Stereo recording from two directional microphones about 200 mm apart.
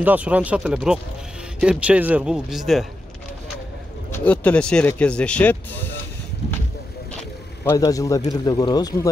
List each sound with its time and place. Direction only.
0.0 s speech: 5° right (ahead or behind)
4.1 s speech: 10° left (ahead or behind)
7.6 s speech: 15° left (ahead or behind)